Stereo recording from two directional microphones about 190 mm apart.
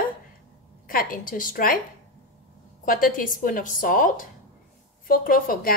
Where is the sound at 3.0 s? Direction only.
45° left (ahead or behind).